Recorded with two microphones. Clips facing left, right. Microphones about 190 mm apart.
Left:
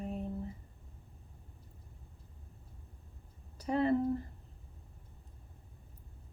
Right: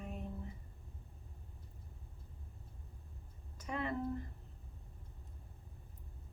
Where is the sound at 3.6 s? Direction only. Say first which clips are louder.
Left 9 dB; 35° left (ahead or behind).